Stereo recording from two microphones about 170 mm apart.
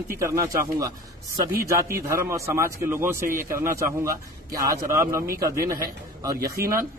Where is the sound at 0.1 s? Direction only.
15° right (ahead or behind).